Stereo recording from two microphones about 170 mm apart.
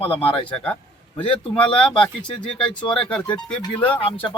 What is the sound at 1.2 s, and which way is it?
Speech, 30° left (ahead or behind).